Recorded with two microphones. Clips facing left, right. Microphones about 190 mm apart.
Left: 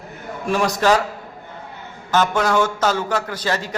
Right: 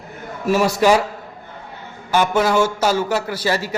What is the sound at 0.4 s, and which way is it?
Speech, 5° right (ahead or behind).